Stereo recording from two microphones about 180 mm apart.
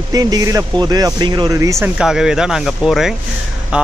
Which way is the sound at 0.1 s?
20° right (ahead or behind).